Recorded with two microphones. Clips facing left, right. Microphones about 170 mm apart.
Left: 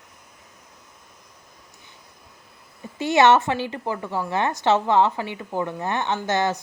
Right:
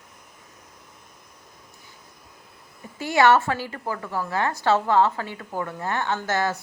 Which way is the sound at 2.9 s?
20° left (ahead or behind).